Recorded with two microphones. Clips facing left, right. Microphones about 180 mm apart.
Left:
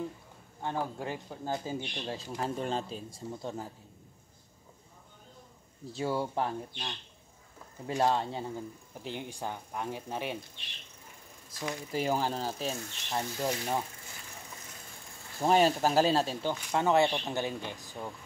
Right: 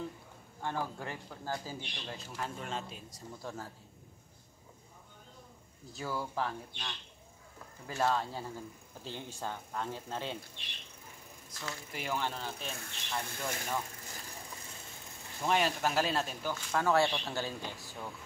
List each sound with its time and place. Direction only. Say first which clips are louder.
0.6 s speech: left 3 dB; 20° left (ahead or behind)
5.9 s speech: left 6 dB; 25° left (ahead or behind)
8.0 s speech: left 3 dB; 25° left (ahead or behind)
11.9 s speech: left 6 dB; 35° left (ahead or behind)
15.4 s speech: left 6 dB; 35° left (ahead or behind)
16.5 s speech: left 2 dB; 20° left (ahead or behind)